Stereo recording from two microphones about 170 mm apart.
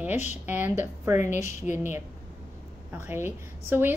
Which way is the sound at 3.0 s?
15° right (ahead or behind).